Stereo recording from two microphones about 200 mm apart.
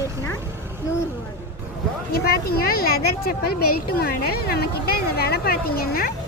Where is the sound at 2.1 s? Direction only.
50° left (ahead or behind).